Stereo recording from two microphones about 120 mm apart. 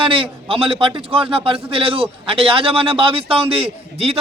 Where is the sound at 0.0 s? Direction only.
45° right (ahead or behind).